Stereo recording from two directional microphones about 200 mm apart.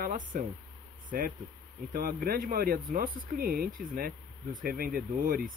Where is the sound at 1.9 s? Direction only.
50° right (ahead or behind).